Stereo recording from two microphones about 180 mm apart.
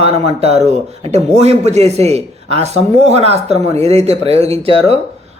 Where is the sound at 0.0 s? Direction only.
35° right (ahead or behind).